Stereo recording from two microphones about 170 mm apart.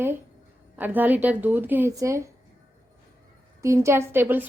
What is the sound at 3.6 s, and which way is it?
Speech, 15° right (ahead or behind).